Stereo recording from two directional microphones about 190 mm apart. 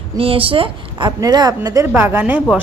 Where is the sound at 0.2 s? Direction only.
30° right (ahead or behind).